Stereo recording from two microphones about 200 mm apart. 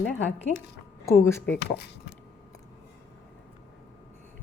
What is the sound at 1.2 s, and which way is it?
Speech, 15° left (ahead or behind).